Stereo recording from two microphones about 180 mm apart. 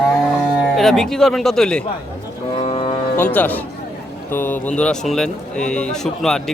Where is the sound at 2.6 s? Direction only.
30° left (ahead or behind).